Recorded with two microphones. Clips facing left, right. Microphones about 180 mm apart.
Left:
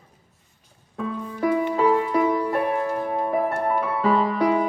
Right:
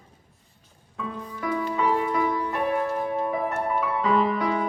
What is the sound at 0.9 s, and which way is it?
Music, 35° left (ahead or behind).